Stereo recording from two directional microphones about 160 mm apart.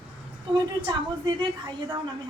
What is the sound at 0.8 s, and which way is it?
A woman's voice, 25° right (ahead or behind).